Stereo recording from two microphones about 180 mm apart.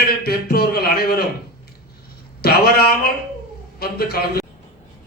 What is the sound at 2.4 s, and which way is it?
A man's voice, 60° left (ahead or behind).